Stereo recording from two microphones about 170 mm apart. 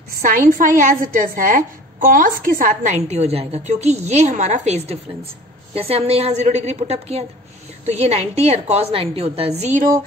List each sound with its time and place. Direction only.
0.2 s a woman's voice: 50° right (ahead or behind)